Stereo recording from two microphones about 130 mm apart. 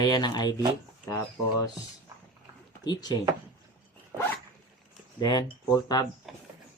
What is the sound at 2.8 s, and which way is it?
Speech, 30° left (ahead or behind).